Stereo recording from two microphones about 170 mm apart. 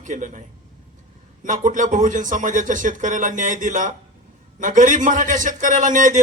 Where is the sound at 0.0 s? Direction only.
50° right (ahead or behind).